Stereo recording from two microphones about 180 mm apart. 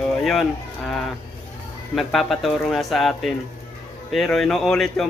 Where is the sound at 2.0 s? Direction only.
Centre (ahead or behind).